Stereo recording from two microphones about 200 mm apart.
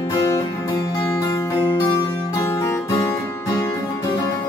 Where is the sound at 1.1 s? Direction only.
20° left (ahead or behind).